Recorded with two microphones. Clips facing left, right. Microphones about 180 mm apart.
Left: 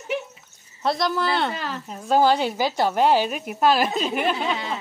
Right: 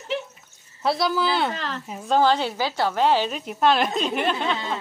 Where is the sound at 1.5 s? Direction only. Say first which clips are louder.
Even; 10° left (ahead or behind).